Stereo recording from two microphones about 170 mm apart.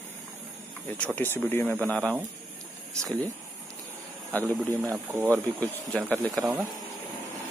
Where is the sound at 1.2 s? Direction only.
10° left (ahead or behind).